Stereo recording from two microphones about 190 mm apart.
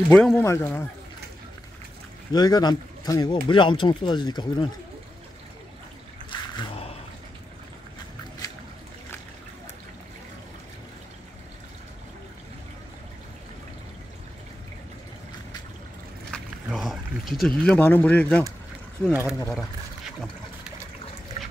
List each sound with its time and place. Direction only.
0.1 s speech: 5° left (ahead or behind)
2.3 s speech: 20° left (ahead or behind)
6.3 s a sound: 25° left (ahead or behind)
16.3 s a sound: centre (ahead or behind)
19.0 s speech: centre (ahead or behind)
21.4 s dog: 35° left (ahead or behind)